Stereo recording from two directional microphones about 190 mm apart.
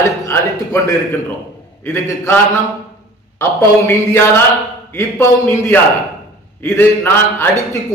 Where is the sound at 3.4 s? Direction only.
15° left (ahead or behind).